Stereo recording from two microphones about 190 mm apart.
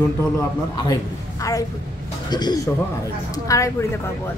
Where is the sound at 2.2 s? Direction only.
20° left (ahead or behind).